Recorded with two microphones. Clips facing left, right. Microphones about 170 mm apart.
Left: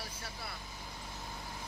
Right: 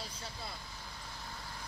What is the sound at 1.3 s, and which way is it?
Vehicle, 20° left (ahead or behind).